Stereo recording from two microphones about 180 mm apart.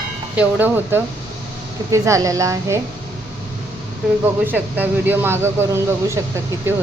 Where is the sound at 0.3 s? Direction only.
10° right (ahead or behind).